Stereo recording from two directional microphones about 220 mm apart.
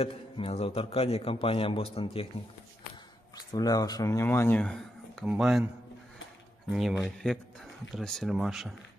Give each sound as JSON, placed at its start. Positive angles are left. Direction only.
{"t": 0.0, "sound": "a man's voice", "side_deg": 25}
{"t": 3.5, "sound": "speech", "side_deg": 15}
{"t": 6.7, "sound": "speech", "side_deg": 0}